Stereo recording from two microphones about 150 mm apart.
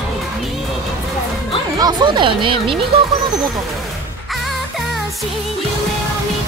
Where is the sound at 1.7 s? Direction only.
30° right (ahead or behind).